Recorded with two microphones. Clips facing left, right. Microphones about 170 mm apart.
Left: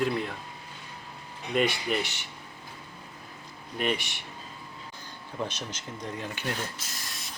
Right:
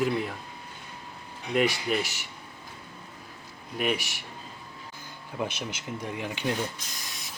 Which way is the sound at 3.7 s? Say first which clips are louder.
Right 1 dB; 5° right (ahead or behind).